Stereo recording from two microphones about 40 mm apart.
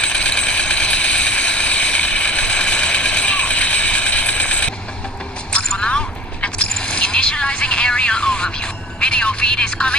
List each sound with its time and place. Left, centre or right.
0.0 s vehicle: left